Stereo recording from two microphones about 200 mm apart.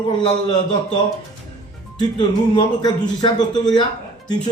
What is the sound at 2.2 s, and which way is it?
Speech, 25° left (ahead or behind).